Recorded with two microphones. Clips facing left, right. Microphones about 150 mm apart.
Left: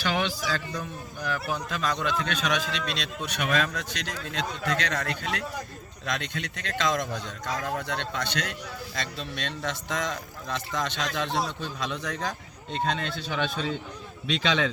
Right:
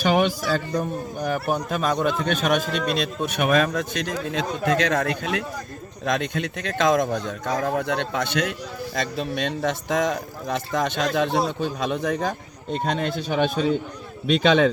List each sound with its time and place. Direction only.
0.0 s a man's voice: 55° right (ahead or behind)